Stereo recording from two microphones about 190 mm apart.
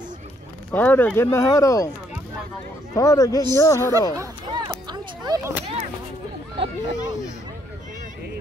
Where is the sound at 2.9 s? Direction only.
15° left (ahead or behind).